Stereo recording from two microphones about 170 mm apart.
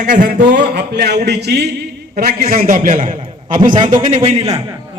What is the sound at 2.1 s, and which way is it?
A man's voice, 60° right (ahead or behind).